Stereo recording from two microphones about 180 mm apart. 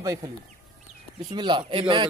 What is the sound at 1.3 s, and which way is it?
Speech, 25° right (ahead or behind).